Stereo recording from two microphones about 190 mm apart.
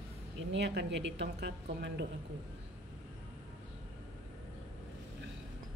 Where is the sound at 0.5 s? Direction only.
65° right (ahead or behind).